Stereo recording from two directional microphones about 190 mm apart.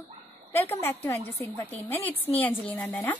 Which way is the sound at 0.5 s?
15° left (ahead or behind).